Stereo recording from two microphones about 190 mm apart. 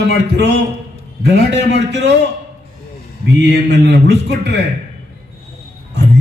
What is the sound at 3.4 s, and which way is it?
A man's voice, 65° right (ahead or behind).